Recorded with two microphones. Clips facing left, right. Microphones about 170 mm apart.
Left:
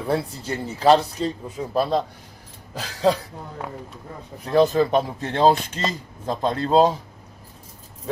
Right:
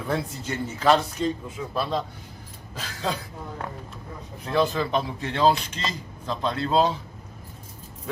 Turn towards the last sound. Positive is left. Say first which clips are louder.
# left 5 dB
turn(degrees=40)  # may be behind; listen again after turning